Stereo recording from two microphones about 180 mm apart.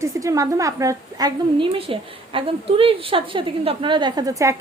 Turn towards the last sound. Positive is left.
turn(degrees=-20)  # may be behind; listen again after turning